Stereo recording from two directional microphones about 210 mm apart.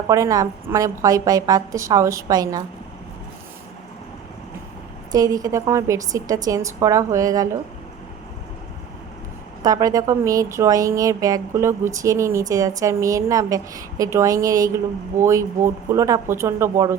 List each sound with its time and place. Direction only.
0.1 s speech: 15° right (ahead or behind)
5.1 s speech: 15° right (ahead or behind)
9.6 s speech: 15° right (ahead or behind)